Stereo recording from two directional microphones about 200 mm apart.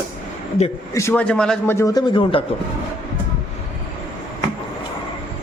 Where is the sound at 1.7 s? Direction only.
15° left (ahead or behind).